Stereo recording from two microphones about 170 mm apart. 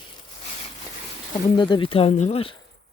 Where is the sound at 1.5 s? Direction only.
30° left (ahead or behind).